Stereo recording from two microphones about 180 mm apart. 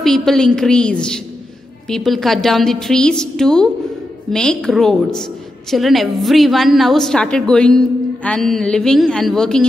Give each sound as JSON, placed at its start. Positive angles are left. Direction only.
{"t": 0.0, "sound": "a woman's voice", "side_deg": 0}